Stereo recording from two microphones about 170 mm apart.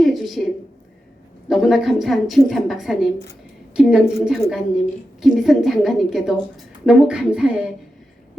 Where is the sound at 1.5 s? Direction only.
Centre (ahead or behind).